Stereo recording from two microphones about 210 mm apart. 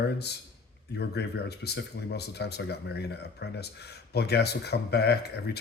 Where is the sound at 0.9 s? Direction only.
50° left (ahead or behind).